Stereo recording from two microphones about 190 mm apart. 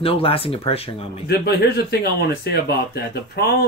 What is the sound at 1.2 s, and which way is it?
Speech, 60° left (ahead or behind).